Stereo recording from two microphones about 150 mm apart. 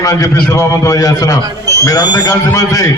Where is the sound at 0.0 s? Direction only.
25° left (ahead or behind).